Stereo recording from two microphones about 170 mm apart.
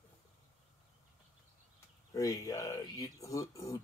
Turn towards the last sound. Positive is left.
turn(degrees=20)  # may be behind; listen again after turning